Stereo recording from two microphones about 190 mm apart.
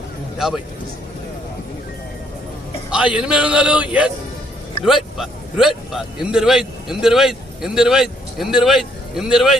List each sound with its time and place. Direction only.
0.3 s speech: centre (ahead or behind)
2.9 s speech: 5° right (ahead or behind)